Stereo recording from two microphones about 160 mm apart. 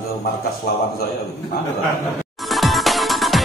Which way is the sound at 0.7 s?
70° left (ahead or behind).